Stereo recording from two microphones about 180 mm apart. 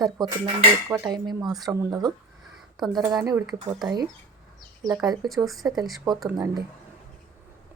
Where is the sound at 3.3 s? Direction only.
20° right (ahead or behind).